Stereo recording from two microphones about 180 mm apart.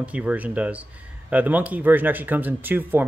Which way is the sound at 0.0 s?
10° right (ahead or behind).